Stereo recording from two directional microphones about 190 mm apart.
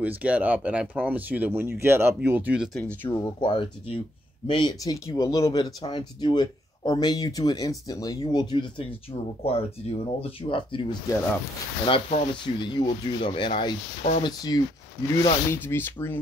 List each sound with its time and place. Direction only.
0.0 s speech: 10° right (ahead or behind)
2.8 s speech: 10° left (ahead or behind)
3.3 s speech: 25° left (ahead or behind); by 16.2 s 10° left (ahead or behind)